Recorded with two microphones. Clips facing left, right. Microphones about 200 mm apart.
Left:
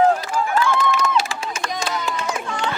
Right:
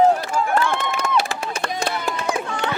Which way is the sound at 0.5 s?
55° right (ahead or behind).